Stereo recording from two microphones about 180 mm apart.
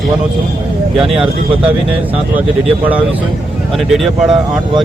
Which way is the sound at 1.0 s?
5° right (ahead or behind).